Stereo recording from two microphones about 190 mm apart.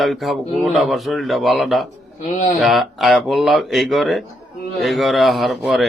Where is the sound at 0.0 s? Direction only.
Centre (ahead or behind).